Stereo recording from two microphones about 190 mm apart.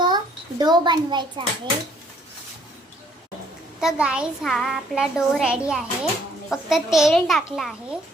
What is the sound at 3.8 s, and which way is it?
A child's voice, 5° right (ahead or behind).